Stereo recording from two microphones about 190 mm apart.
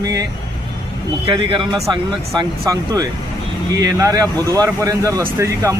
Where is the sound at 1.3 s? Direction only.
25° right (ahead or behind).